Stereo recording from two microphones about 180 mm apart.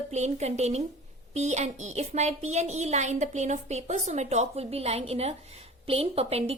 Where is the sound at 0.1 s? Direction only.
40° right (ahead or behind).